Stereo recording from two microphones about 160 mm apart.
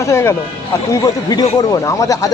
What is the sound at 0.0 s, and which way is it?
Speech, 15° left (ahead or behind).